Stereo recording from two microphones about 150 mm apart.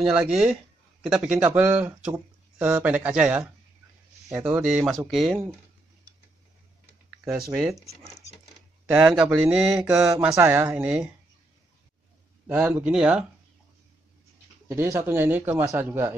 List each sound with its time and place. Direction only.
0.0 s a man's voice: 5° right (ahead or behind)
8.8 s a man's voice: 10° right (ahead or behind)
12.4 s a man's voice: 15° right (ahead or behind)
14.7 s a man's voice: 15° right (ahead or behind)